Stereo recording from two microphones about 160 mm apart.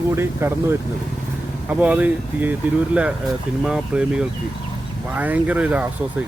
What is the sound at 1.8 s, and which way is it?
Speech, 10° right (ahead or behind).